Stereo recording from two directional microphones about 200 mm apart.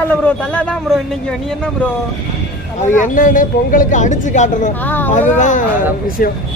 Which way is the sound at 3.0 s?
40° left (ahead or behind).